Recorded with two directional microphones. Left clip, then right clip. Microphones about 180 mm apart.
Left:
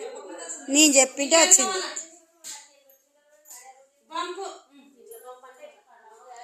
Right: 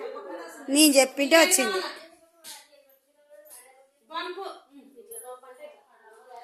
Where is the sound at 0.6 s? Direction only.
10° right (ahead or behind).